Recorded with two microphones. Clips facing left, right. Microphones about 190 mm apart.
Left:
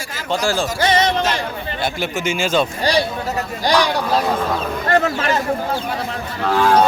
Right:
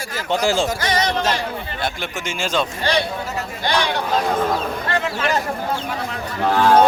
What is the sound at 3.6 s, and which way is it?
Speech, 40° left (ahead or behind).